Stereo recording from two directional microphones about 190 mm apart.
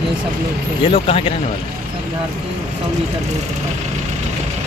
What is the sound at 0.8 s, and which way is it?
Speech, 30° left (ahead or behind).